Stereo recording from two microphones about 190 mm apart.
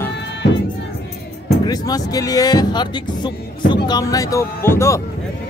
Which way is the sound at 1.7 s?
20° left (ahead or behind).